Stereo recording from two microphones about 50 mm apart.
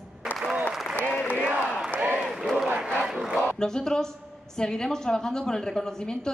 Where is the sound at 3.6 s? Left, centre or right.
Centre.